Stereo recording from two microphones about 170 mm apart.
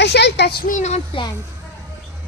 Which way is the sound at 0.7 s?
40° left (ahead or behind).